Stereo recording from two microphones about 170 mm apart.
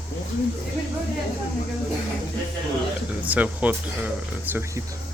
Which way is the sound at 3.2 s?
10° right (ahead or behind).